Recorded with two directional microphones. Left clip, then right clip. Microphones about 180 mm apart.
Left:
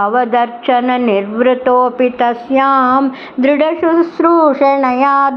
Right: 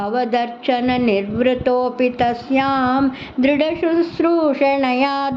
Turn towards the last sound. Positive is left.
turn(degrees=-15)  # may be behind; listen again after turning